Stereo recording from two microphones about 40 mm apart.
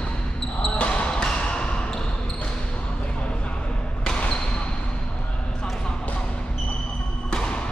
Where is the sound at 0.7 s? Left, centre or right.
Left.